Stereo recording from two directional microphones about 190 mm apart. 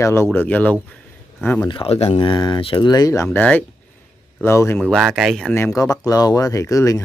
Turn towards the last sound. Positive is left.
turn(degrees=15)  # may be behind; listen again after turning